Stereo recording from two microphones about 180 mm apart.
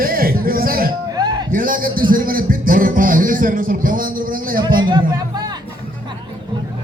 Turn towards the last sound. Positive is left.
turn(degrees=-25)  # may be behind; listen again after turning